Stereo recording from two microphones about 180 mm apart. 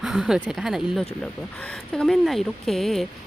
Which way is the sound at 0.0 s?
Centre (ahead or behind).